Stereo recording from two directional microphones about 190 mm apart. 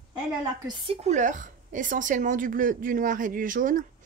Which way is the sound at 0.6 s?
25° right (ahead or behind).